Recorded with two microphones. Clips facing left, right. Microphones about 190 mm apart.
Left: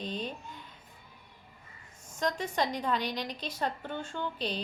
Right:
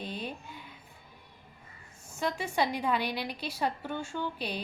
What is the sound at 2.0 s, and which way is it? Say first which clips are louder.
A woman's voice: left 1 dB; 10° right (ahead or behind).